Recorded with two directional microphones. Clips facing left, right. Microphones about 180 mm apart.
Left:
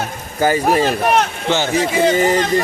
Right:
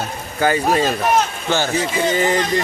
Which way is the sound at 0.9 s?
60° left (ahead or behind).